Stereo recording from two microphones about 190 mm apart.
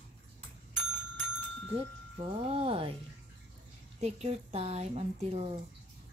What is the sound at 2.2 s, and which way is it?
Speech, 30° right (ahead or behind).